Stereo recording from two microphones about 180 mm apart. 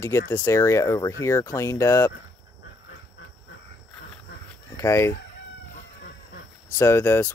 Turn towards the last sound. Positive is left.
turn(degrees=10)  # may be behind; listen again after turning